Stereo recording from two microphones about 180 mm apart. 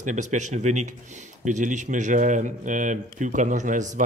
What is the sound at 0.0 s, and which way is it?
Speech, 45° right (ahead or behind).